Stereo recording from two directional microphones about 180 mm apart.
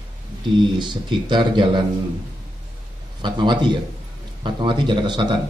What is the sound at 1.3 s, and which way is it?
Speech, 25° right (ahead or behind).